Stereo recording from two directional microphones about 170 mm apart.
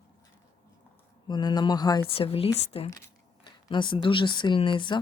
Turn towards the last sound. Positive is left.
turn(degrees=30)  # may be behind; listen again after turning